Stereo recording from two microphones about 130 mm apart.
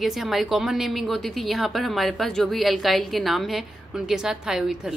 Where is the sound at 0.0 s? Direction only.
Centre (ahead or behind).